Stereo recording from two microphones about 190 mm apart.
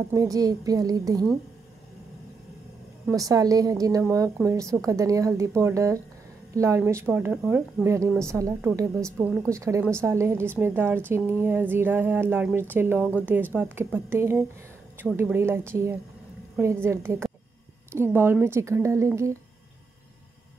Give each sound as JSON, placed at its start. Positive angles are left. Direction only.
{"t": 0.1, "sound": "a woman's voice", "side_deg": -20}
{"t": 3.1, "sound": "a woman's voice", "side_deg": -20}